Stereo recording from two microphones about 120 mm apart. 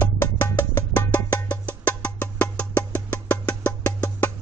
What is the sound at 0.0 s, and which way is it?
Music, 20° left (ahead or behind).